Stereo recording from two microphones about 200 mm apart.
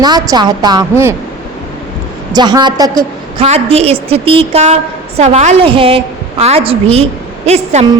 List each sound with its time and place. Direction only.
0.0 s a woman's voice: 20° right (ahead or behind)
2.3 s a woman's voice: 20° right (ahead or behind)
3.4 s a woman's voice: 30° right (ahead or behind)